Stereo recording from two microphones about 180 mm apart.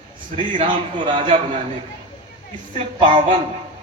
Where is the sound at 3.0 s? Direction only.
25° right (ahead or behind).